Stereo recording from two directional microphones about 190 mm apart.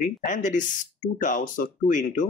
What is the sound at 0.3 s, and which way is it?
Speech, 40° left (ahead or behind).